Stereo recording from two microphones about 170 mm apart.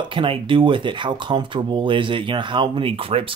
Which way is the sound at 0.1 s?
30° right (ahead or behind).